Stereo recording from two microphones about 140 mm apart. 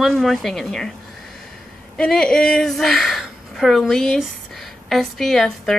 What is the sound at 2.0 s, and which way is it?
A woman's voice, 5° left (ahead or behind).